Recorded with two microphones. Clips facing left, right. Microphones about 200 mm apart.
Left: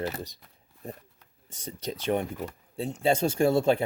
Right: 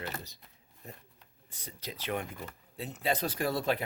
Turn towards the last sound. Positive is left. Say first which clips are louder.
# left 9 dB
turn(degrees=30)  # may be behind; listen again after turning